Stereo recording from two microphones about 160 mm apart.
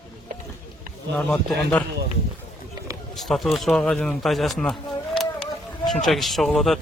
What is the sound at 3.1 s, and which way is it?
Speech, centre (ahead or behind).